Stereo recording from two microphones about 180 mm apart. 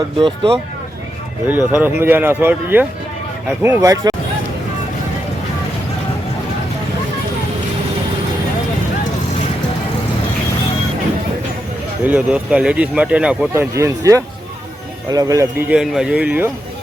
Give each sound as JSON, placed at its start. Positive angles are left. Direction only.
{"t": 0.2, "sound": "speech", "side_deg": -30}
{"t": 1.5, "sound": "speech", "side_deg": -10}
{"t": 12.0, "sound": "speech", "side_deg": -5}
{"t": 15.7, "sound": "speech", "side_deg": 0}